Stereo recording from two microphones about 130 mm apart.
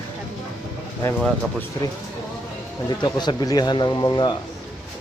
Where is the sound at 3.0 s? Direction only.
35° left (ahead or behind).